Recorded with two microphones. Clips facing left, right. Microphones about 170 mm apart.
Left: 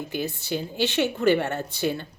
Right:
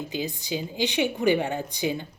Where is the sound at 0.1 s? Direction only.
15° right (ahead or behind).